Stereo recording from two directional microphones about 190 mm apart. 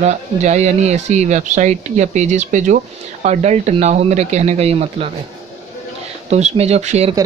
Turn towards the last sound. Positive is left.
turn(degrees=-35)  # may be behind; listen again after turning